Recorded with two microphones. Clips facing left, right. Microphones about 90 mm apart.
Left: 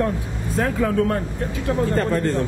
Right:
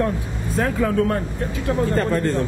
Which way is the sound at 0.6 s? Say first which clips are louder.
Even; 25° right (ahead or behind).